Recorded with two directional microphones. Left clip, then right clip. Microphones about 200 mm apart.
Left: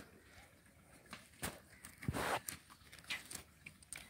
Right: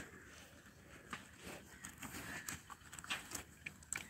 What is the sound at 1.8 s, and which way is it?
Walk, 5° right (ahead or behind).